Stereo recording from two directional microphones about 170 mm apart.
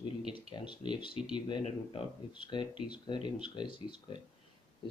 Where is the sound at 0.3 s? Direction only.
30° left (ahead or behind).